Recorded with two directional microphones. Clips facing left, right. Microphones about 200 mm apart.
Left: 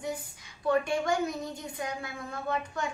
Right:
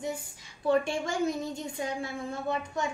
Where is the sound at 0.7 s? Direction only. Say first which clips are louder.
Even; 25° right (ahead or behind).